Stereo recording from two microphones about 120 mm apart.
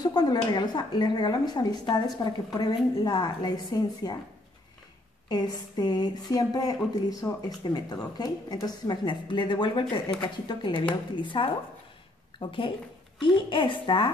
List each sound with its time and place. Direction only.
0.0 s speech: 35° left (ahead or behind)
5.3 s a woman's voice: 35° left (ahead or behind)